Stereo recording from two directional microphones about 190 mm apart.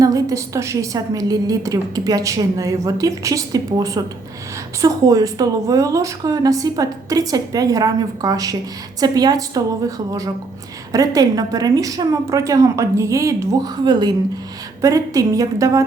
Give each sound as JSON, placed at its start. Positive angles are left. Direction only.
{"t": 0.0, "sound": "a woman's voice", "side_deg": -20}